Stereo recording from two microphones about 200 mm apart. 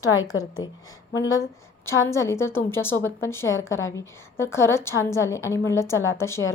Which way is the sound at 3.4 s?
75° left (ahead or behind).